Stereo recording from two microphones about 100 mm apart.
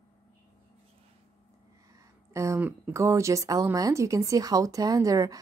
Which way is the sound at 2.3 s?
30° right (ahead or behind).